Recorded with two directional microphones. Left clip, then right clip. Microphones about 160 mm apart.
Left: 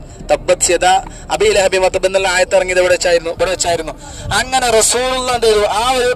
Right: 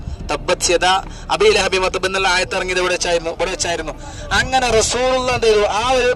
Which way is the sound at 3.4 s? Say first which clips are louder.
Left 5 dB; 25° left (ahead or behind).